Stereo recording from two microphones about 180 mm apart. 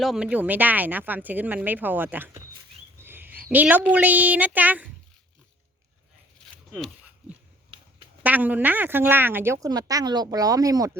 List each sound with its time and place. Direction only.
0.0 s a woman's voice: 5° right (ahead or behind)
3.0 s a sound: 10° right (ahead or behind)
3.5 s a woman's voice: 10° right (ahead or behind)
8.2 s a woman's voice: 10° right (ahead or behind)